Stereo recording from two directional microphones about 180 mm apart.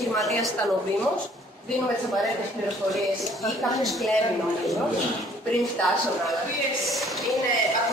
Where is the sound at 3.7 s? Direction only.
Centre (ahead or behind).